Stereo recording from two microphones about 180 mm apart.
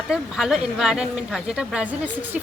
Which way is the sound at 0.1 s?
Centre (ahead or behind).